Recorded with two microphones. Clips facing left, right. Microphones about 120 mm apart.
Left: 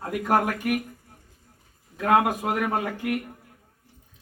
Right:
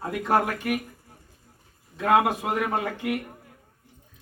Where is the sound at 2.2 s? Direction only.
10° left (ahead or behind).